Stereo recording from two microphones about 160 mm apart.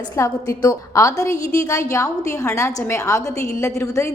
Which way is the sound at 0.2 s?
25° left (ahead or behind).